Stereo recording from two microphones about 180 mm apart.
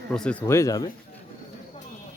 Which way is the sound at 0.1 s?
5° left (ahead or behind).